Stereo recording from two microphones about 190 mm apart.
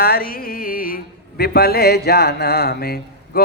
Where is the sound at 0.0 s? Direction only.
50° left (ahead or behind).